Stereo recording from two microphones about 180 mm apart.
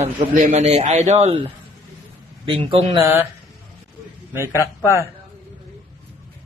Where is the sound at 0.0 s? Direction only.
40° right (ahead or behind).